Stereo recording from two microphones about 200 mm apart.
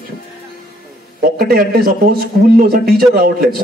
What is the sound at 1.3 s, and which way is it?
A man's voice, 50° right (ahead or behind).